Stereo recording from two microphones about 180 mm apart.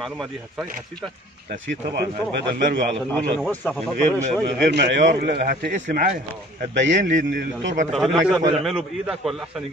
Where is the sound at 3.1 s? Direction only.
10° left (ahead or behind).